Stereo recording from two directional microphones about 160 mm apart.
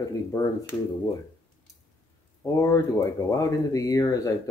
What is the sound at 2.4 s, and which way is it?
Speech, 20° left (ahead or behind).